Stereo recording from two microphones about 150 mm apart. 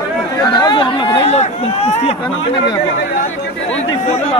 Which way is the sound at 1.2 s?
45° left (ahead or behind).